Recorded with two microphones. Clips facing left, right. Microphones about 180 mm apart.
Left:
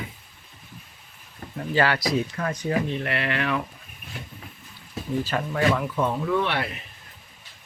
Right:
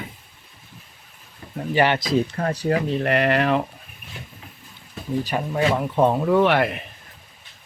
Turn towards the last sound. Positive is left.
turn(degrees=-55)  # may be behind; listen again after turning